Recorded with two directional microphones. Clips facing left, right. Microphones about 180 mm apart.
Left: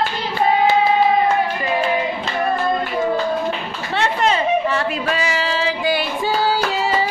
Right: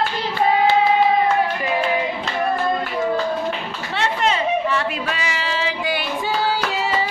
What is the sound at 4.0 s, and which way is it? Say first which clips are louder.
Chatter: left 2 dB; 40° left (ahead or behind).